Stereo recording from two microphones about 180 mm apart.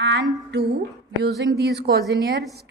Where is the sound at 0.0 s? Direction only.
80° right.